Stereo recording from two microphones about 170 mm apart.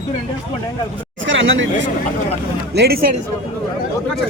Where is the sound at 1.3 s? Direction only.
90° right.